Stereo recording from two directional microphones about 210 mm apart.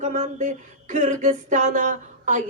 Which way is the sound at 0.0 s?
35° right (ahead or behind).